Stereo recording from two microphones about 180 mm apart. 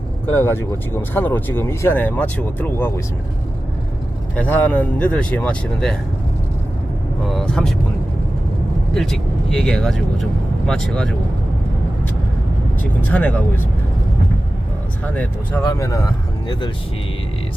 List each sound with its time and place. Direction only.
0.3 s speech: 10° left (ahead or behind)
4.4 s speech: 10° left (ahead or behind)
7.3 s speech: 5° left (ahead or behind)
9.0 s speech: 5° left (ahead or behind)
12.8 s speech: 10° left (ahead or behind)
15.1 s speech: 10° left (ahead or behind)
15.6 s speech: 20° left (ahead or behind)